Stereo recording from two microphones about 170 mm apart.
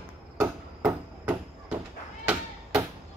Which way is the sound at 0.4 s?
15° right (ahead or behind).